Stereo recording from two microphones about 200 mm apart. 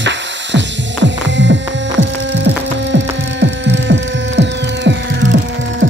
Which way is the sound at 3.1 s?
65° right (ahead or behind).